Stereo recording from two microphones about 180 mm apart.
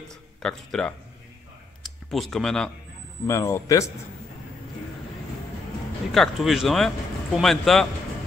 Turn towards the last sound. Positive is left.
turn(degrees=0)  # may be behind; listen again after turning